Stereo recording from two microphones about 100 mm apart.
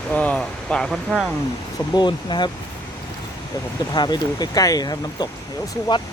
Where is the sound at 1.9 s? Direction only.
50° left (ahead or behind).